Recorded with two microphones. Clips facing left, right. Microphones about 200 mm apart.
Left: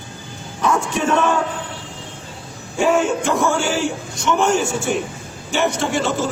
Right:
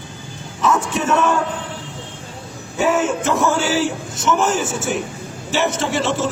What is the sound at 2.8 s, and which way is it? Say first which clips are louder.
A man's voice: left 1 dB; centre (ahead or behind).